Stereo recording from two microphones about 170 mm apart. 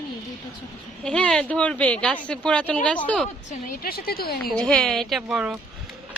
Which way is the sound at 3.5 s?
55° left (ahead or behind).